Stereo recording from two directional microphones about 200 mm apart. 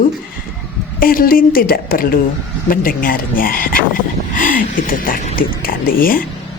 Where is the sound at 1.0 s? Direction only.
45° left (ahead or behind).